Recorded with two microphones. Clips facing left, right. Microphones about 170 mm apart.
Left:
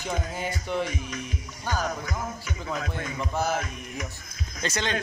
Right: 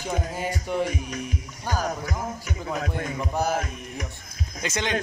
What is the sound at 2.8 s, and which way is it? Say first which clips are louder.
Speech: right 3 dB; 40° right (ahead or behind).